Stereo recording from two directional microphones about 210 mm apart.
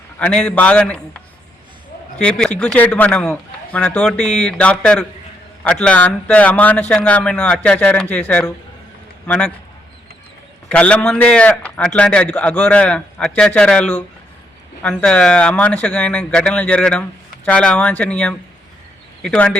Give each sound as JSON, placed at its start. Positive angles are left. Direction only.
{"t": 0.2, "sound": "a man's voice", "side_deg": 5}
{"t": 10.7, "sound": "speech", "side_deg": 5}